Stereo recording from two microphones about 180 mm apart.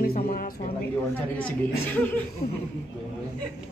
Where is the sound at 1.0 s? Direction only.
10° left (ahead or behind).